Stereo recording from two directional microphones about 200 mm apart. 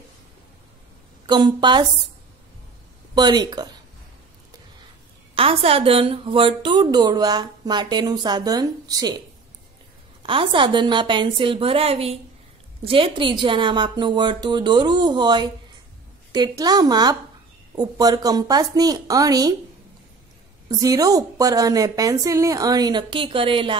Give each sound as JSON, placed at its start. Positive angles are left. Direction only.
{"t": 1.2, "sound": "a woman's voice", "side_deg": -20}
{"t": 3.2, "sound": "a woman's voice", "side_deg": -20}
{"t": 5.3, "sound": "a woman's voice", "side_deg": -30}
{"t": 10.2, "sound": "a woman's voice", "side_deg": -25}
{"t": 20.6, "sound": "a woman's voice", "side_deg": -15}